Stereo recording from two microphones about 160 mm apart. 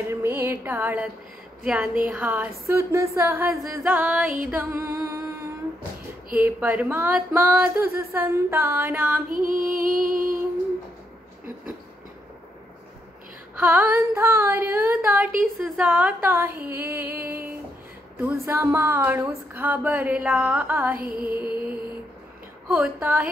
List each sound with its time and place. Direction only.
0.1 s music: 15° right (ahead or behind)
1.6 s a woman's voice: 5° right (ahead or behind)
2.0 s female singing: 10° right (ahead or behind)
9.3 s music: 60° right (ahead or behind)
13.6 s female singing: 10° right (ahead or behind)
20.9 s a sound: 65° right (ahead or behind)
21.3 s music: 10° right (ahead or behind)
22.7 s female singing: 10° right (ahead or behind)